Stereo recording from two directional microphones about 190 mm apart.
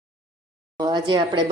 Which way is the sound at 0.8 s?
20° right (ahead or behind).